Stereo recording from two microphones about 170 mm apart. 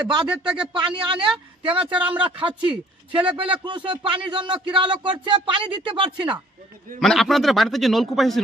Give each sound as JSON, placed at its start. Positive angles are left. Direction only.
{"t": 0.7, "sound": "a man's voice", "side_deg": -30}
{"t": 2.0, "sound": "speech", "side_deg": -5}
{"t": 2.2, "sound": "a man's voice", "side_deg": -30}
{"t": 7.0, "sound": "a man's voice", "side_deg": 0}